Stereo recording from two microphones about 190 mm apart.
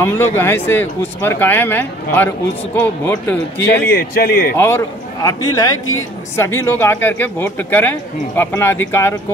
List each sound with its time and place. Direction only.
0.0 s speech: 10° left (ahead or behind)
3.9 s speech: 55° left (ahead or behind)
4.6 s speech: 15° left (ahead or behind)